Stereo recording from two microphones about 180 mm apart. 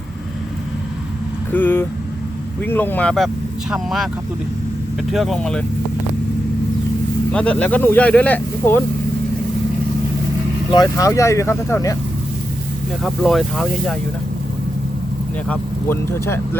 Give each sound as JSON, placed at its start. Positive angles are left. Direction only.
{"t": 1.5, "sound": "speech", "side_deg": 10}
{"t": 5.1, "sound": "speech", "side_deg": 0}
{"t": 7.3, "sound": "speech", "side_deg": 5}
{"t": 10.7, "sound": "speech", "side_deg": 20}
{"t": 13.0, "sound": "speech", "side_deg": 0}
{"t": 15.4, "sound": "speech", "side_deg": 10}